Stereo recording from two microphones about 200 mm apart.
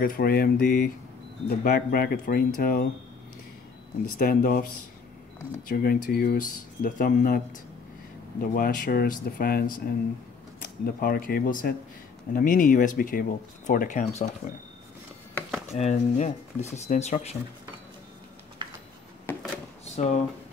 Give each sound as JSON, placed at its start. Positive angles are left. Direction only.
{"t": 0.0, "sound": "speech", "side_deg": 45}
{"t": 4.2, "sound": "speech", "side_deg": 45}
{"t": 5.7, "sound": "speech", "side_deg": 45}
{"t": 15.7, "sound": "speech", "side_deg": 35}
{"t": 19.2, "sound": "a sound", "side_deg": 5}
{"t": 19.8, "sound": "drawer open or close", "side_deg": 35}